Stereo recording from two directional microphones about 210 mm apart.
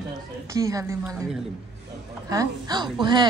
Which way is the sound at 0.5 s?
15° right (ahead or behind).